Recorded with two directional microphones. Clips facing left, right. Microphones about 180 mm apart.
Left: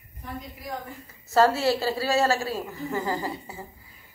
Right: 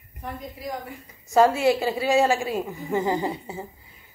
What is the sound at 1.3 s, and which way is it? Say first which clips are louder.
A woman's voice: right 2 dB; 15° right (ahead or behind).